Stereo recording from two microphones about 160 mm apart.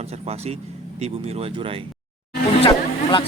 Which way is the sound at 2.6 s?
30° left (ahead or behind).